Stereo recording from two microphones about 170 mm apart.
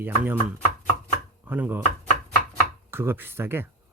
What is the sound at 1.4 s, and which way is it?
Chopping, 10° right (ahead or behind).